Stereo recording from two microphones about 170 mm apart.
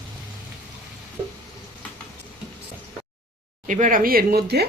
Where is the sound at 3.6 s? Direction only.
45° right (ahead or behind); by 4.6 s 65° right (ahead or behind).